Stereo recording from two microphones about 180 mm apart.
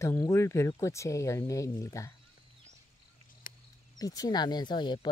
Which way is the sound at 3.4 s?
50° left (ahead or behind).